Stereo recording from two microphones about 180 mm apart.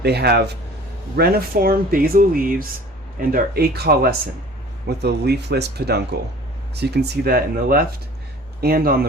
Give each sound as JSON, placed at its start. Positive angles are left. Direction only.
{"t": 0.0, "sound": "speech", "side_deg": -65}